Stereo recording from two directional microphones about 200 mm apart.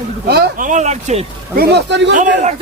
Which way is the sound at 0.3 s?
45° right (ahead or behind).